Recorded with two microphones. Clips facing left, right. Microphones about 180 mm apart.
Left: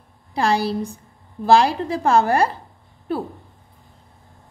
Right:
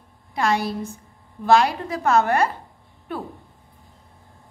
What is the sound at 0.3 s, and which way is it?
A woman's voice, 30° left (ahead or behind).